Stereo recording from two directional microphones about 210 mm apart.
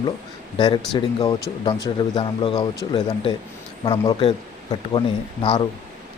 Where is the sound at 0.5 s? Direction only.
25° left (ahead or behind).